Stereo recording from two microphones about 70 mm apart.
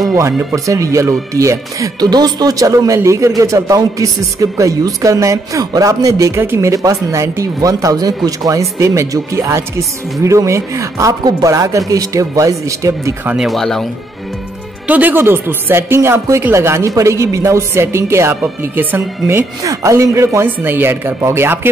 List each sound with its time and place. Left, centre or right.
0.7 s speech: right
2.0 s speech: right
13.4 s speech: centre
14.9 s speech: right
19.6 s speech: right
20.4 s speech: right